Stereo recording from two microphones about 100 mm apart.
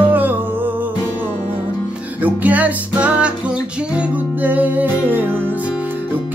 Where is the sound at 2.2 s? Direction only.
15° right (ahead or behind).